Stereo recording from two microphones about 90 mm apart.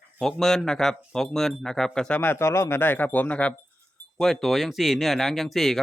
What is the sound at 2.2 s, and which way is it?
Speech, 25° left (ahead or behind).